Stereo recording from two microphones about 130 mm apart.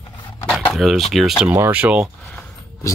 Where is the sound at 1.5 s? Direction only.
10° right (ahead or behind).